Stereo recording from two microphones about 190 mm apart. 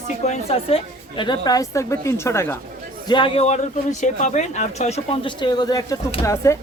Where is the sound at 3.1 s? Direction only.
25° left (ahead or behind).